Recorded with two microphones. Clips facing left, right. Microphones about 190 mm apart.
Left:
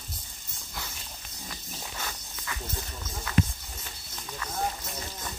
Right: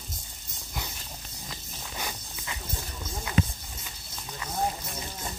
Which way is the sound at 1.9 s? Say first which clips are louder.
Right 5 dB; 15° right (ahead or behind).